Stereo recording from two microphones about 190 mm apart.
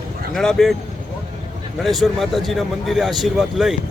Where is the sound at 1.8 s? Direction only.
Centre (ahead or behind).